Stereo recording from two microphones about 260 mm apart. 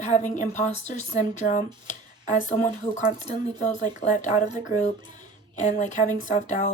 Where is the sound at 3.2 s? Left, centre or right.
Centre.